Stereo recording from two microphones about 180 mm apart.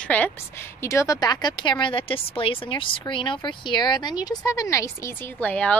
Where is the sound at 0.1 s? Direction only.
10° left (ahead or behind).